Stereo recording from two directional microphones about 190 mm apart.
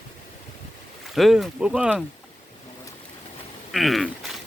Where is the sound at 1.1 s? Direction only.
Centre (ahead or behind).